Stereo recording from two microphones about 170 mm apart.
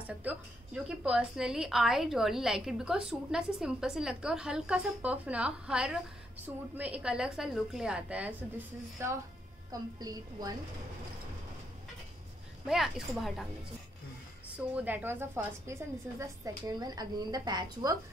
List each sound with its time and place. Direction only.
0.2 s a woman's voice: 10° right (ahead or behind)
12.6 s a woman's voice: 5° right (ahead or behind)
14.8 s a woman's voice: 10° right (ahead or behind)